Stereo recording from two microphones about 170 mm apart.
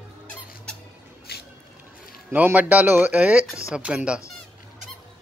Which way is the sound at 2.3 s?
10° right (ahead or behind).